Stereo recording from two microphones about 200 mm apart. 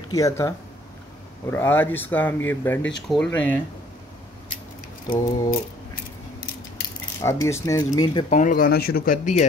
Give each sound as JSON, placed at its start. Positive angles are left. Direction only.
{"t": 0.1, "sound": "speech", "side_deg": 15}
{"t": 5.1, "sound": "speech", "side_deg": 15}
{"t": 7.2, "sound": "speech", "side_deg": 15}
{"t": 8.3, "sound": "speech", "side_deg": 40}